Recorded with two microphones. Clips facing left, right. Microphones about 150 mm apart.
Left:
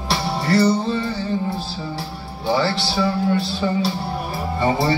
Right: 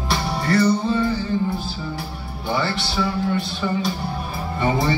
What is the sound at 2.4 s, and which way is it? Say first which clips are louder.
Music: left 4 dB; 35° left (ahead or behind).